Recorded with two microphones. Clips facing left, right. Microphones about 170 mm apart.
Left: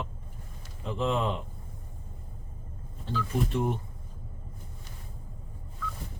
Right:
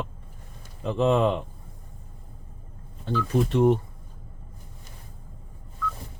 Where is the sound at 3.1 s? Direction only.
80° right.